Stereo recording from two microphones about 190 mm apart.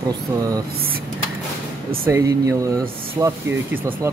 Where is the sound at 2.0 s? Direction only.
15° right (ahead or behind).